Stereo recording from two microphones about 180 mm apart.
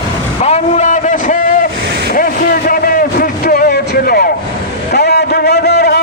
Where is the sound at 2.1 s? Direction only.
55° left (ahead or behind).